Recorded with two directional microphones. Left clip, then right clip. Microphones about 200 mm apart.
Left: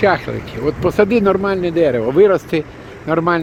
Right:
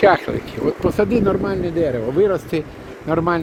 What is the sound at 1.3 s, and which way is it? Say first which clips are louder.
Speech: left 4 dB; 25° left (ahead or behind).